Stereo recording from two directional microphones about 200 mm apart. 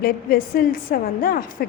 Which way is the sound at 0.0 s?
50° left (ahead or behind).